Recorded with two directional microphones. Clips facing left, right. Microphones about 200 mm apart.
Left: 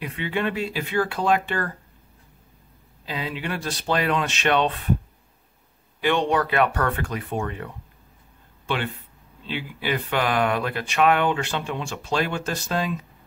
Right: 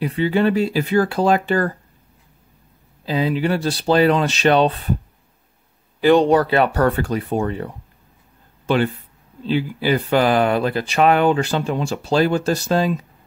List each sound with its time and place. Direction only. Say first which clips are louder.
0.0 s speech: right 9 dB; 35° right (ahead or behind)
3.1 s speech: right 10 dB; 35° right (ahead or behind)
5.9 s speech: right 8 dB; 35° right (ahead or behind)